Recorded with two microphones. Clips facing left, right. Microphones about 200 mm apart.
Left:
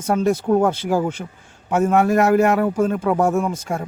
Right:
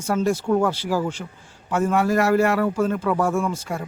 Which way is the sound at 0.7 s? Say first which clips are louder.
Left 3 dB; 20° left (ahead or behind).